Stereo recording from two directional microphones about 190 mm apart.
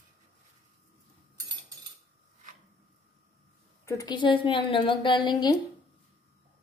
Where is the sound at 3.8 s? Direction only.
20° left (ahead or behind).